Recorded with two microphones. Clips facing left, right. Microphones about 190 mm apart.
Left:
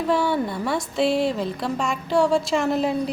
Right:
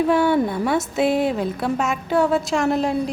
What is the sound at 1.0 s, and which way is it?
Speech, 55° right (ahead or behind).